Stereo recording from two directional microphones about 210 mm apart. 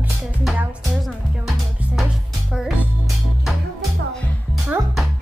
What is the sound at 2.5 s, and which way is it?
Music, centre (ahead or behind).